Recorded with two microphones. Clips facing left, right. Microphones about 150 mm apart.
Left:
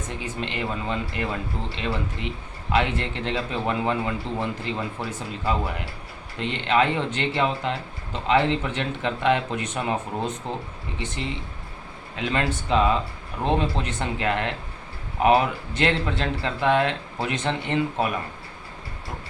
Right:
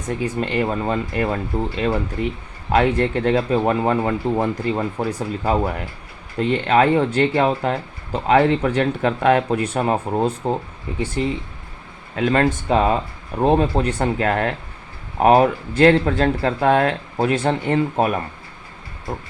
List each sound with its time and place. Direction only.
0.3 s speech: 45° right (ahead or behind)
12.1 s speech: 50° right (ahead or behind)